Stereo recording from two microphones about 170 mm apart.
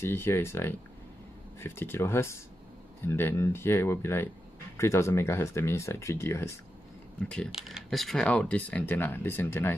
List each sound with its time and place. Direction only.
0.0 s speech: 15° left (ahead or behind)